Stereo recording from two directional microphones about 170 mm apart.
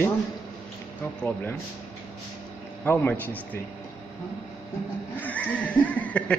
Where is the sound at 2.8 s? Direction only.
10° left (ahead or behind).